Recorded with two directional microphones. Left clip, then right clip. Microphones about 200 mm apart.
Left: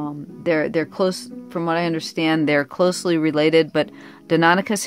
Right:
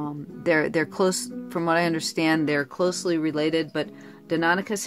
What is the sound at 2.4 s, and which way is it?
Speech, 30° left (ahead or behind).